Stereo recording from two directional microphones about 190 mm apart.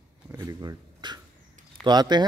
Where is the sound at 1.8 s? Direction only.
20° right (ahead or behind).